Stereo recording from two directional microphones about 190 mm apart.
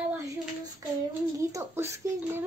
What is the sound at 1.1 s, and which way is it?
A child's voice, 15° right (ahead or behind).